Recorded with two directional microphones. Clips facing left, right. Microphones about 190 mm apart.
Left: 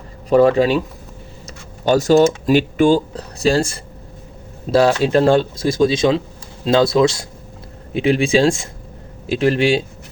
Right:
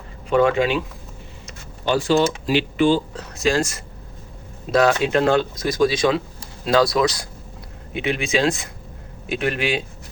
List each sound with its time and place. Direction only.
0.3 s speech: 35° left (ahead or behind)